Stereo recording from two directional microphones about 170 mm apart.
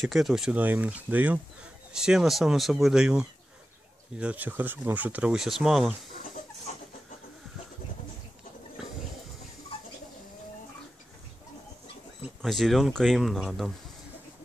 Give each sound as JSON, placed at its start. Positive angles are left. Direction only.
{"t": 0.0, "sound": "speech", "side_deg": 0}
{"t": 6.7, "sound": "chicken", "side_deg": 50}
{"t": 12.4, "sound": "speech", "side_deg": 0}